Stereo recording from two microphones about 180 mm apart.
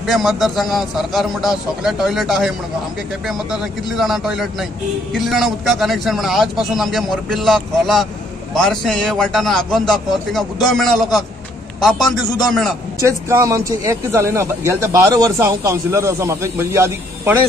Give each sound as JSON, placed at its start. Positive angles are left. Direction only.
{"t": 0.0, "sound": "a man's voice", "side_deg": 0}
{"t": 13.0, "sound": "speech", "side_deg": -15}